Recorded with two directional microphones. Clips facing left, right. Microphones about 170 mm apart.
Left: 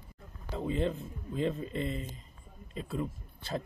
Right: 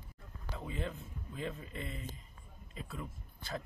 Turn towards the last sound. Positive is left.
turn(degrees=30)  # may be behind; listen again after turning